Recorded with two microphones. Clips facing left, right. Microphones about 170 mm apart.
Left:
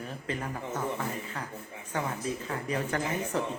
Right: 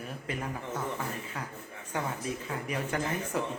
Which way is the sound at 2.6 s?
10° right (ahead or behind).